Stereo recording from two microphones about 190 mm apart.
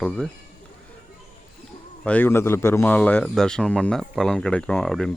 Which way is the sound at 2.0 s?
10° left (ahead or behind).